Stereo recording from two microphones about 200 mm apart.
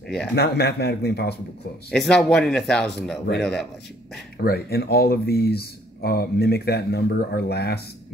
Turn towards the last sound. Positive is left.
turn(degrees=55)  # may be behind; listen again after turning